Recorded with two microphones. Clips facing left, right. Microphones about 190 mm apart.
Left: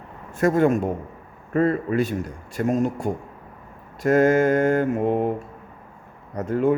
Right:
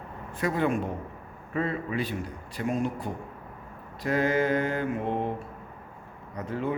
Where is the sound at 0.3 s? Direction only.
45° left (ahead or behind).